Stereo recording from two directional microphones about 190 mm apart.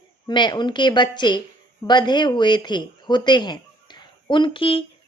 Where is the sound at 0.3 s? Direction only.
25° left (ahead or behind).